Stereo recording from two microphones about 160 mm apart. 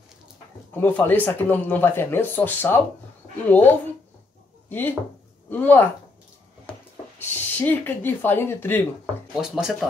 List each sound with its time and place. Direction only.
0.7 s speech: 10° left (ahead or behind)
7.2 s speech: 10° left (ahead or behind)
9.3 s speech: centre (ahead or behind)